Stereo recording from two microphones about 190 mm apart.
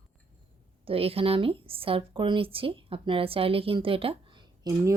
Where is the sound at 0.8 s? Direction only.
30° right (ahead or behind).